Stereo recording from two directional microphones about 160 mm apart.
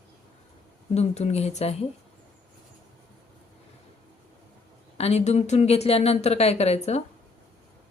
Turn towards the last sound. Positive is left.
turn(degrees=40)  # may be behind; listen again after turning